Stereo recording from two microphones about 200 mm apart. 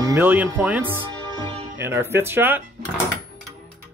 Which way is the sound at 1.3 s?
25° right (ahead or behind).